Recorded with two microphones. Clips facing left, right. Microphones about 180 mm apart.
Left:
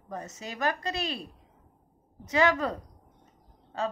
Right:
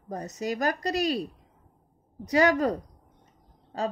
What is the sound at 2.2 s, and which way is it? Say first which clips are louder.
Speech: right 3 dB; 35° right (ahead or behind).